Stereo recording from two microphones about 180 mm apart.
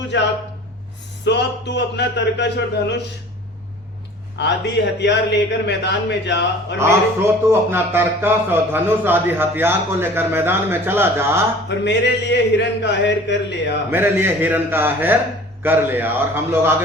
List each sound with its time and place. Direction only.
0.1 s a man's voice: 85° left
1.2 s a man's voice: 75° left (ahead or behind)
4.4 s a man's voice: 75° left (ahead or behind)
6.7 s a man's voice: 15° right (ahead or behind)
11.7 s a man's voice: 75° left (ahead or behind)
13.9 s a man's voice: 10° right (ahead or behind)